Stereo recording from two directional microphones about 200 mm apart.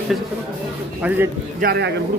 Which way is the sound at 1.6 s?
55° right (ahead or behind).